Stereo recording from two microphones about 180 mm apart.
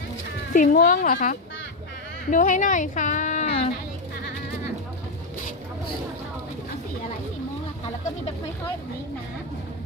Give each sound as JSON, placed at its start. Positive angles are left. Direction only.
{"t": 0.5, "sound": "a woman's voice", "side_deg": 45}